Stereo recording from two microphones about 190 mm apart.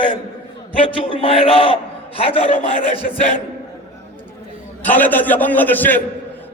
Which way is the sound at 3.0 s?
40° left (ahead or behind).